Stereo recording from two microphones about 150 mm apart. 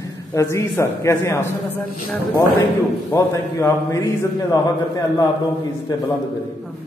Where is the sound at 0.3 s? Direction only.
20° left (ahead or behind).